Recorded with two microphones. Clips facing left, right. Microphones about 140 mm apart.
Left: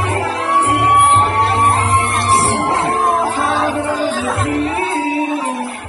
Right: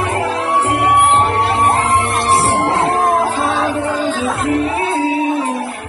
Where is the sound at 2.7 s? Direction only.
30° right (ahead or behind).